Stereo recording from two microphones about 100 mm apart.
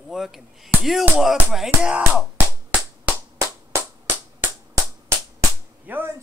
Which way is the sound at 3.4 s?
25° right (ahead or behind).